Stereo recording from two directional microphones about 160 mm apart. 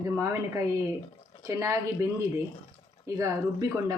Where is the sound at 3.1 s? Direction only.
20° right (ahead or behind).